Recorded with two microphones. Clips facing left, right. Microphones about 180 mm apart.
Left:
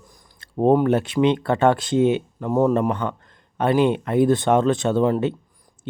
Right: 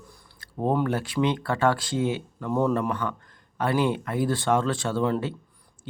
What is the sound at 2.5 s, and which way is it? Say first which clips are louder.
Speech: left 5 dB; 45° left (ahead or behind).